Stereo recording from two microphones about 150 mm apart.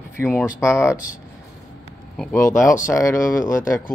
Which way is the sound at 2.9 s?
20° left (ahead or behind).